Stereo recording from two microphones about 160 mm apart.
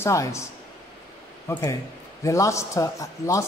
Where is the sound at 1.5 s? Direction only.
15° left (ahead or behind).